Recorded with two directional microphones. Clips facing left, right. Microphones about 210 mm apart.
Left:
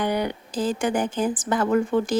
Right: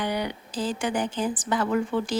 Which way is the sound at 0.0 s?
50° left (ahead or behind).